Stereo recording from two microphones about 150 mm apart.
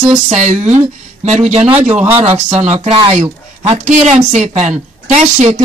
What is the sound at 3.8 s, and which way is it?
Speech, 55° right (ahead or behind).